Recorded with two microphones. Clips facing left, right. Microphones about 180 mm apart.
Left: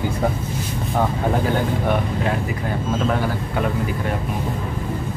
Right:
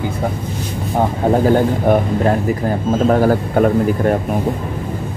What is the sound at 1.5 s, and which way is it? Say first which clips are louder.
A man's voice: right 7 dB; 45° right (ahead or behind).